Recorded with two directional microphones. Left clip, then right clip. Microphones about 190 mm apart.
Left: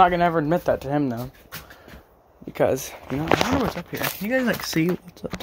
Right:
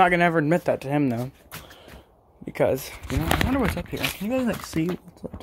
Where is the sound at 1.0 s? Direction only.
20° right (ahead or behind).